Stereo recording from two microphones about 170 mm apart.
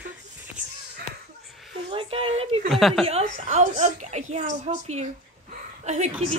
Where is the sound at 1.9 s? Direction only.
30° right (ahead or behind).